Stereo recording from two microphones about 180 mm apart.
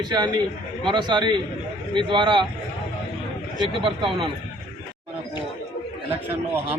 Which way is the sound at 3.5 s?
30° right (ahead or behind).